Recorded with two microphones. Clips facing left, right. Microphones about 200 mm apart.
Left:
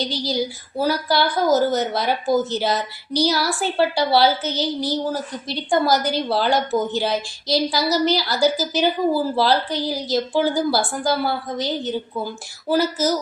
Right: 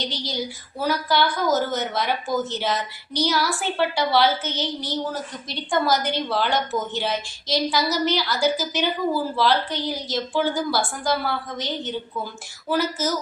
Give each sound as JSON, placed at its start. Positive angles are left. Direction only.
{"t": 0.8, "sound": "a woman's voice", "side_deg": 35}